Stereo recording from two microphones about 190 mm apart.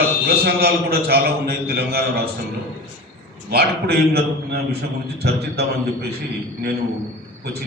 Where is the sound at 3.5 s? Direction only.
55° right (ahead or behind).